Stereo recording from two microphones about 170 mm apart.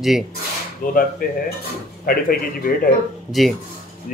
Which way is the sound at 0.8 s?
60° left (ahead or behind).